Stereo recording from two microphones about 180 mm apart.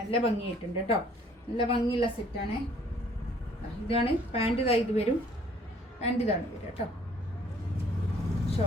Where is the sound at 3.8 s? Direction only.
30° left (ahead or behind).